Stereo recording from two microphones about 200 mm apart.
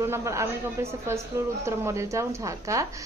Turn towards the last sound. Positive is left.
turn(degrees=-15)  # may be behind; listen again after turning